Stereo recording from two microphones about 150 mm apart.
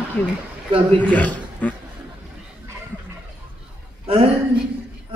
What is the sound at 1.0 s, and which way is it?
Speech, 10° left (ahead or behind).